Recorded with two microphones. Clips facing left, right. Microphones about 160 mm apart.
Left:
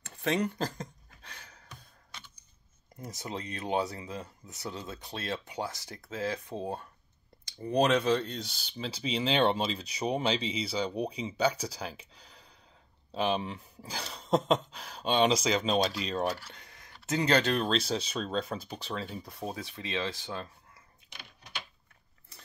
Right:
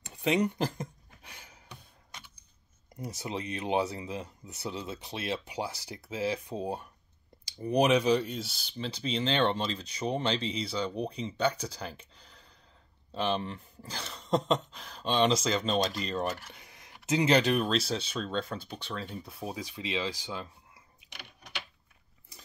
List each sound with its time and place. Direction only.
0.0 s a sound: 15° right (ahead or behind)
3.0 s speech: 15° right (ahead or behind); by 16.3 s 5° left (ahead or behind)
16.4 s speech: 10° right (ahead or behind)